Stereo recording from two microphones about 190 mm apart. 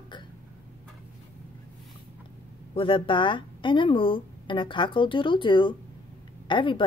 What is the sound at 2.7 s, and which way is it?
Speech, 25° left (ahead or behind).